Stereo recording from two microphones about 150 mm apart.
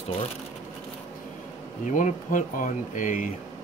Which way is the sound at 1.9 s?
60° left (ahead or behind).